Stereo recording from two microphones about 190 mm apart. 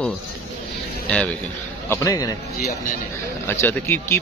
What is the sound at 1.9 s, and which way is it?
Speech, 20° left (ahead or behind).